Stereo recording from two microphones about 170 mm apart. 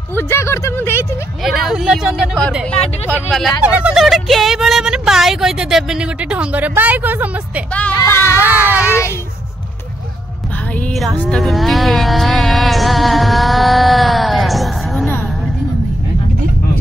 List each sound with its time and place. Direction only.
0.1 s speech: 15° left (ahead or behind)
1.4 s speech: centre (ahead or behind)
3.6 s speech: 5° right (ahead or behind)
7.9 s speech: 15° left (ahead or behind)
8.4 s speech: 10° right (ahead or behind)
10.7 s music: 5° left (ahead or behind)